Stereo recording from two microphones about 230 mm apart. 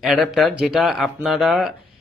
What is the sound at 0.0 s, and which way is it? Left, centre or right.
A man's voice, centre.